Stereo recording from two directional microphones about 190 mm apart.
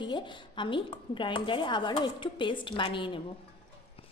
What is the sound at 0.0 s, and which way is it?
Speech, 25° left (ahead or behind).